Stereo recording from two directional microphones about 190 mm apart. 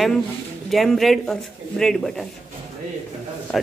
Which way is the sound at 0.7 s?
Centre (ahead or behind).